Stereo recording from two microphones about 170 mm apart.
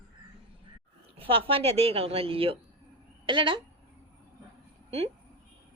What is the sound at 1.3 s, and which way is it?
Speech, 35° right (ahead or behind).